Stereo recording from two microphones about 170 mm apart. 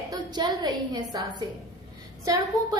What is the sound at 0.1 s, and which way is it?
A woman's voice, 25° right (ahead or behind).